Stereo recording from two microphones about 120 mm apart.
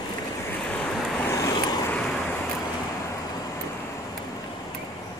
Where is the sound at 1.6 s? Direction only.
35° left (ahead or behind).